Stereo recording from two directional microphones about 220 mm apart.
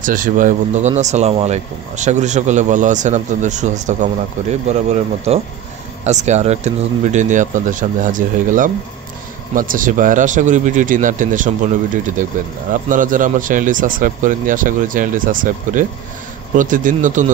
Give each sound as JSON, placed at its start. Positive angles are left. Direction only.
{"t": 0.0, "sound": "speech", "side_deg": -35}